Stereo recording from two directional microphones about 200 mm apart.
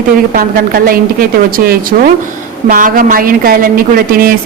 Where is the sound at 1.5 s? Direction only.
45° right (ahead or behind).